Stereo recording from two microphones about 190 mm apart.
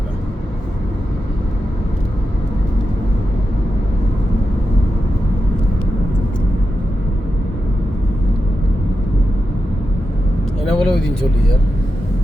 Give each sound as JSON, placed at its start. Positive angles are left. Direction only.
{"t": 10.8, "sound": "vehicle", "side_deg": 5}